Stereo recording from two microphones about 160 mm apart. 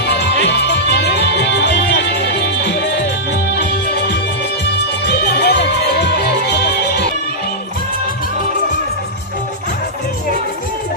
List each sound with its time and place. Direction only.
0.9 s music: 90° left
5.1 s music: 85° left